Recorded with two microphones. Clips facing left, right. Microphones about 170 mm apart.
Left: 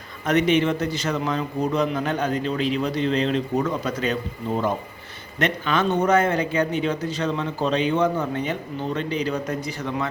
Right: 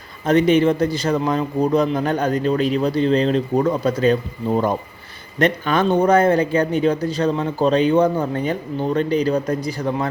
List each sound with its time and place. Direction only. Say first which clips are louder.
0.3 s a man's voice: right 5 dB; 35° right (ahead or behind)